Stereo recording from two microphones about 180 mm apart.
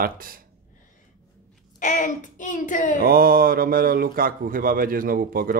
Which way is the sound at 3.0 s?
55° right (ahead or behind).